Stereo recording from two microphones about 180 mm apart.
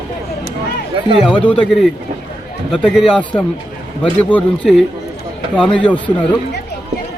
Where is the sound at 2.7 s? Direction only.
Centre (ahead or behind).